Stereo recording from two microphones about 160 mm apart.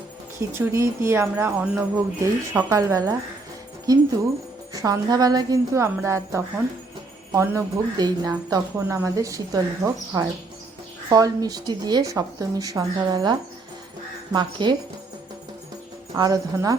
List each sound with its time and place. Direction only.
0.3 s speech: 15° right (ahead or behind)
14.3 s speech: 25° right (ahead or behind)
16.1 s speech: 25° right (ahead or behind)